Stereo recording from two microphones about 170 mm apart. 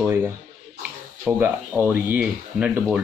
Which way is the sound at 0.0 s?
10° right (ahead or behind).